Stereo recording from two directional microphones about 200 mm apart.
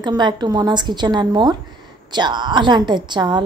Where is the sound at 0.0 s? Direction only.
20° right (ahead or behind).